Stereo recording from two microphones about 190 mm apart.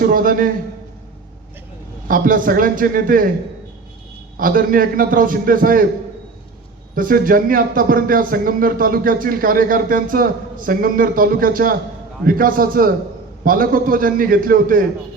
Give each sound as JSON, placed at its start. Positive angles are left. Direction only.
{"t": 0.0, "sound": "speech", "side_deg": -45}
{"t": 2.0, "sound": "speech", "side_deg": -45}
{"t": 4.4, "sound": "speech", "side_deg": -45}
{"t": 6.9, "sound": "speech", "side_deg": -45}